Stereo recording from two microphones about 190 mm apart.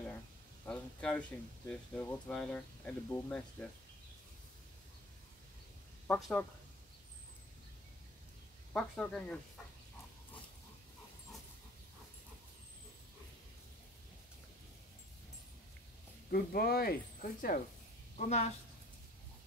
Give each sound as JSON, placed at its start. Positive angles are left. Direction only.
{"t": 0.7, "sound": "a sound", "side_deg": 5}
{"t": 1.7, "sound": "speech", "side_deg": 5}
{"t": 6.0, "sound": "speech", "side_deg": 5}
{"t": 8.7, "sound": "speech", "side_deg": 5}
{"t": 16.3, "sound": "speech", "side_deg": 55}
{"t": 18.1, "sound": "a woman's voice", "side_deg": 35}